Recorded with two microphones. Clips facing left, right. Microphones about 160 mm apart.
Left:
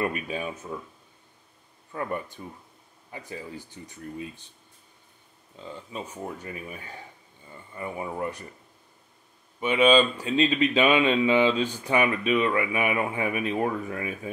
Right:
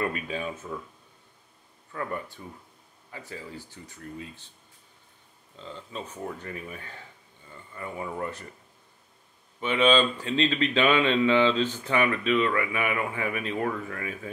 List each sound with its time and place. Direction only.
0.0 s speech: 15° left (ahead or behind)
1.9 s speech: 20° left (ahead or behind)
5.6 s speech: 10° left (ahead or behind)
9.6 s speech: 10° left (ahead or behind)